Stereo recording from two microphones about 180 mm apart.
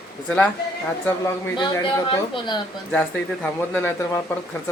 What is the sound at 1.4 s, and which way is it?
Speech, 20° left (ahead or behind).